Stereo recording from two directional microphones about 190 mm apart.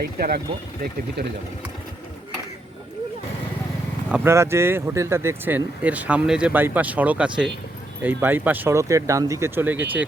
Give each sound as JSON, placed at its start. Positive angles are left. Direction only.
{"t": 0.0, "sound": "speech", "side_deg": -55}
{"t": 4.1, "sound": "speech", "side_deg": -10}